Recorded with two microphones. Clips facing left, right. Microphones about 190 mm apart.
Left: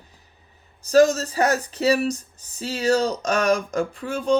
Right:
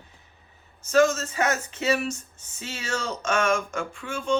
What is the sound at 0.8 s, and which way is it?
Speech, 35° left (ahead or behind).